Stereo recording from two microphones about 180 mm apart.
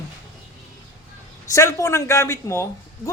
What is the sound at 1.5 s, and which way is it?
A man's voice, 15° left (ahead or behind).